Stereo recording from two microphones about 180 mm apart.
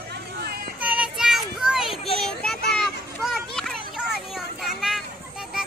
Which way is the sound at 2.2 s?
5° left (ahead or behind).